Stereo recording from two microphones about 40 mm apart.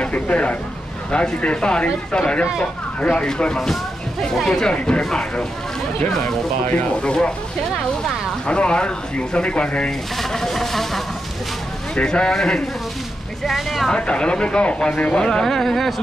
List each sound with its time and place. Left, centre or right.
0.0 s speech: left
4.2 s speech: centre
7.0 s speech: left
8.5 s speech: left
9.8 s speech: centre
11.9 s speech: left
13.5 s speech: centre
13.8 s speech: left
15.4 s speech: centre